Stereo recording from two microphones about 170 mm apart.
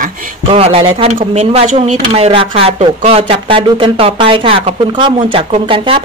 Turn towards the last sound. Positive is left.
turn(degrees=-30)  # may be behind; listen again after turning